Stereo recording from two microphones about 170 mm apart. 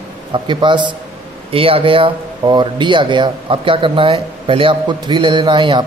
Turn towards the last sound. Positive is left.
turn(degrees=-30)  # may be behind; listen again after turning